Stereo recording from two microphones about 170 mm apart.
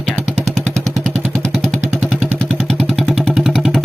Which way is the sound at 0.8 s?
20° right (ahead or behind).